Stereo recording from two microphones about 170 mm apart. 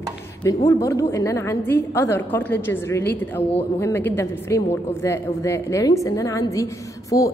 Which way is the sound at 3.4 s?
35° left (ahead or behind).